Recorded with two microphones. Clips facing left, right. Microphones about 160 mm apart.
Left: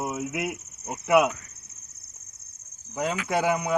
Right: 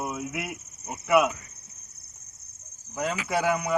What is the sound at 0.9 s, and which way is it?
Speech, 15° left (ahead or behind).